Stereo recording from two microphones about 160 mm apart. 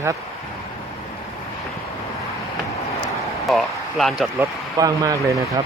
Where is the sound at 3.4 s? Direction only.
Centre (ahead or behind).